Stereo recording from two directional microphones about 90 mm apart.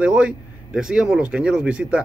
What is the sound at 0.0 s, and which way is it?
A man's voice, 10° right (ahead or behind).